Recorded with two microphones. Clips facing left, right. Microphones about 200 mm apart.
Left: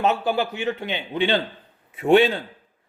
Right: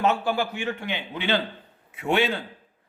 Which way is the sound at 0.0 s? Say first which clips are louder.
Left 2 dB; 20° left (ahead or behind).